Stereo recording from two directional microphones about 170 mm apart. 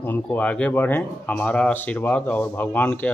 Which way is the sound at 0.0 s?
10° left (ahead or behind).